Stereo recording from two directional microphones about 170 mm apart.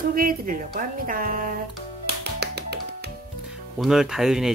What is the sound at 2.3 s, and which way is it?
Music, 75° right (ahead or behind).